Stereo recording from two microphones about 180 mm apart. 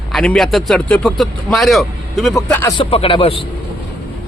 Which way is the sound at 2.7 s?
30° left (ahead or behind).